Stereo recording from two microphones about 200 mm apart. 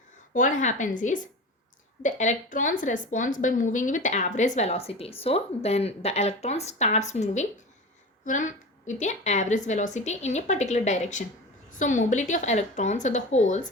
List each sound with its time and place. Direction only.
0.3 s a woman's voice: 40° left (ahead or behind)